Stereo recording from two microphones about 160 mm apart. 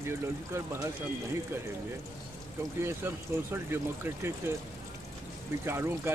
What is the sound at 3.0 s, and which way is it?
Speech, 15° right (ahead or behind).